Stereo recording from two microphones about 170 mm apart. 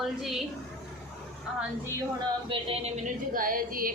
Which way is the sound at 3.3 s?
55° right (ahead or behind).